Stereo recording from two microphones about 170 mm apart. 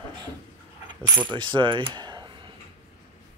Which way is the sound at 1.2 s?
30° right (ahead or behind).